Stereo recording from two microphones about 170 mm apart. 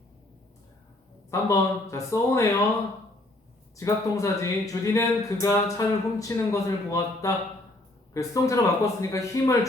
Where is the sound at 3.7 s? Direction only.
20° left (ahead or behind).